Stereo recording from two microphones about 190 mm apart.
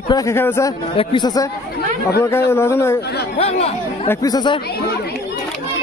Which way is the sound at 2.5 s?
15° left (ahead or behind).